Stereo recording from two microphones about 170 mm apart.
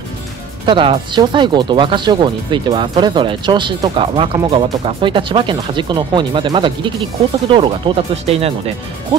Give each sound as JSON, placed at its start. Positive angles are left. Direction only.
{"t": 0.7, "sound": "speech", "side_deg": -30}